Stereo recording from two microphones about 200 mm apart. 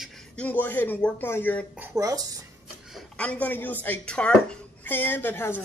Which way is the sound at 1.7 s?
15° right (ahead or behind).